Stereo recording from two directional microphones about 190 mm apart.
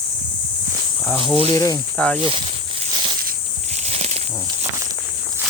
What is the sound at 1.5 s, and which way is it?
Speech, 15° left (ahead or behind).